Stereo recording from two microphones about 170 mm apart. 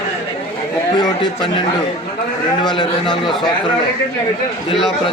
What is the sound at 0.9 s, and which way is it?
Speech, 25° left (ahead or behind).